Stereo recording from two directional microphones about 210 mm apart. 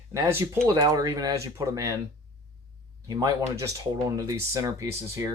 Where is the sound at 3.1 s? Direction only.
15° right (ahead or behind).